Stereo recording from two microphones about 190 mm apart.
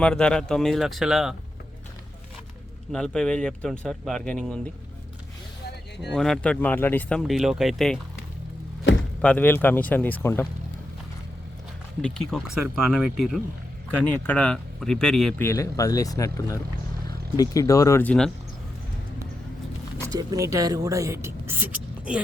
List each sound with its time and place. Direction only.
0.0 s speech: 5° left (ahead or behind)
2.9 s speech: 5° left (ahead or behind)
6.0 s speech: centre (ahead or behind)
9.2 s speech: 10° left (ahead or behind)
12.0 s speech: 5° left (ahead or behind)
15.4 s speech: 15° left (ahead or behind)
20.1 s speech: 20° right (ahead or behind)